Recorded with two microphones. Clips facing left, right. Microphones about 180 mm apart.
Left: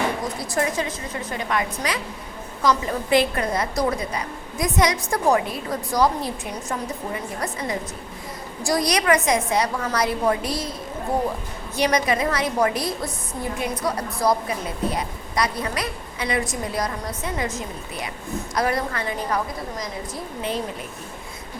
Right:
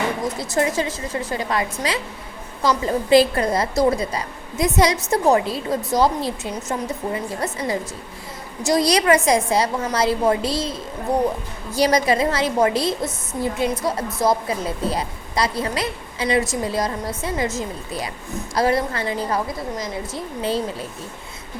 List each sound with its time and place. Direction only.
0.8 s a woman's voice: 25° right (ahead or behind)
11.8 s a woman's voice: 35° right (ahead or behind)